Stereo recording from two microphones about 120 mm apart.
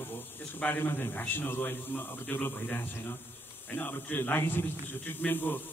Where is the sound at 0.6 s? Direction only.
10° left (ahead or behind).